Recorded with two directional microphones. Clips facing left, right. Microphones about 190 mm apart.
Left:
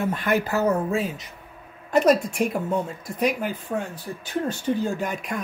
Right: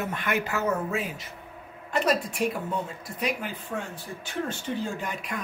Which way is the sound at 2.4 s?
50° left (ahead or behind).